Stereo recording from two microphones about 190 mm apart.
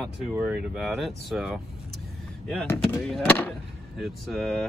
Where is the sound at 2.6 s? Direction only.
5° left (ahead or behind).